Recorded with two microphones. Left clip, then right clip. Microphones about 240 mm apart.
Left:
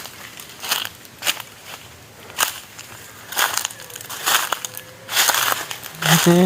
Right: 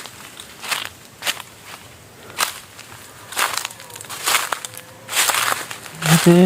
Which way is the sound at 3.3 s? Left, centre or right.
Left.